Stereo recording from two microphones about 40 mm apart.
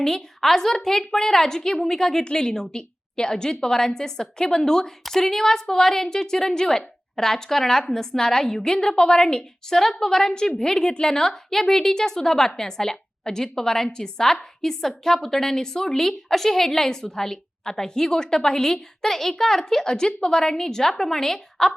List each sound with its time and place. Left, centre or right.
0.0 s a woman's voice: centre